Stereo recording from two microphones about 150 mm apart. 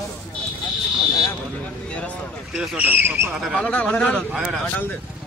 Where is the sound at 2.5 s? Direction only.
5° right (ahead or behind).